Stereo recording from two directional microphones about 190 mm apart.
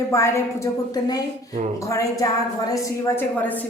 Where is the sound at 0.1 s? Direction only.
15° left (ahead or behind).